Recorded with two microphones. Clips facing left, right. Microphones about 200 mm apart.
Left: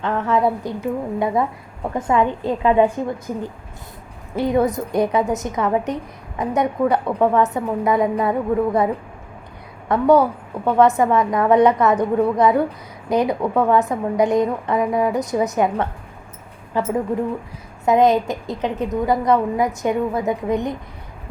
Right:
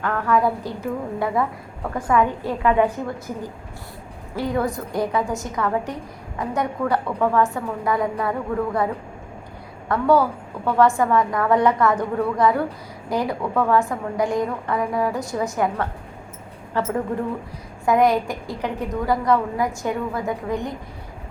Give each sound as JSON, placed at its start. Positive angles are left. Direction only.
{"t": 0.0, "sound": "a woman's voice", "side_deg": 25}
{"t": 9.9, "sound": "a woman's voice", "side_deg": 20}